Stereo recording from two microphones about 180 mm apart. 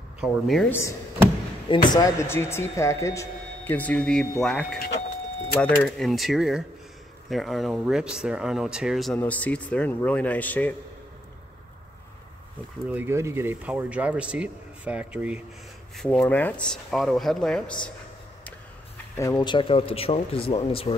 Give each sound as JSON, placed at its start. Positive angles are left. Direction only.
{"t": 0.2, "sound": "speech", "side_deg": 0}
{"t": 1.7, "sound": "speech", "side_deg": 25}
{"t": 12.9, "sound": "speech", "side_deg": -15}
{"t": 16.0, "sound": "speech", "side_deg": 5}
{"t": 19.1, "sound": "speech", "side_deg": 20}